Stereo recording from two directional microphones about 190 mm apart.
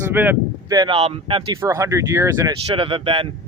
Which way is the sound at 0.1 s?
10° right (ahead or behind).